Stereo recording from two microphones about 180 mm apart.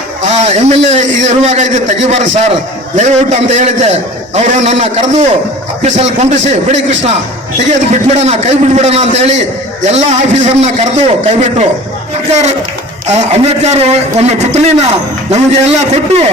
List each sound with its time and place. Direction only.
0.2 s a man's voice: 40° right (ahead or behind)